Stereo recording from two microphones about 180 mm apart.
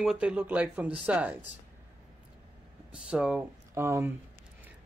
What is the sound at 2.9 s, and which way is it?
Speech, 5° right (ahead or behind).